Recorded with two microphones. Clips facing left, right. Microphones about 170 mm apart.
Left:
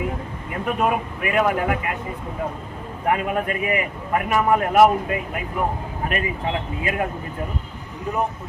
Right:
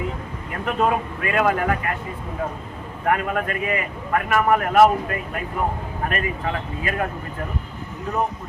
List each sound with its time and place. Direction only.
0.6 s a man's voice: 15° left (ahead or behind)
3.1 s a man's voice: 20° left (ahead or behind)
6.1 s speech: 20° left (ahead or behind)